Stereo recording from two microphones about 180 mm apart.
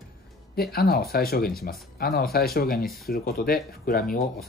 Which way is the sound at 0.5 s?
60° left (ahead or behind).